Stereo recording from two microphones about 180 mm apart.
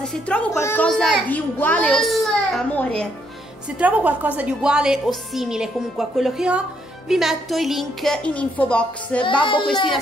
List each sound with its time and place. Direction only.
0.0 s a woman's voice: 5° left (ahead or behind)
3.8 s a woman's voice: 10° right (ahead or behind)
9.2 s child singing: 25° left (ahead or behind)